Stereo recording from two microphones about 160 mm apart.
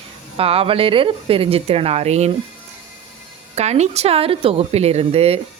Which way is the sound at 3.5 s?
45° right (ahead or behind).